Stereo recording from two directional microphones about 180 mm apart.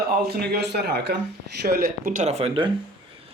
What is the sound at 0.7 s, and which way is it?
A man's voice, 65° right (ahead or behind).